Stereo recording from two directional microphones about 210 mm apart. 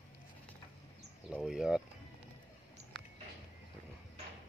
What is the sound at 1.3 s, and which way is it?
Speech, 5° right (ahead or behind).